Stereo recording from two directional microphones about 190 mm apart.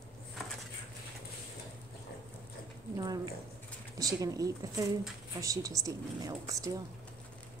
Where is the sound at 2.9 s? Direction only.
20° right (ahead or behind).